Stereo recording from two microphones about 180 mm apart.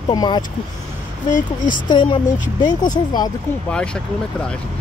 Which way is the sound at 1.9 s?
25° left (ahead or behind).